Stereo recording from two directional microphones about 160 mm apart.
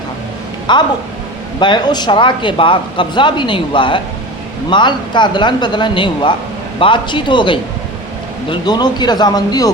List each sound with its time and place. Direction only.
0.7 s a man's voice: 30° left (ahead or behind)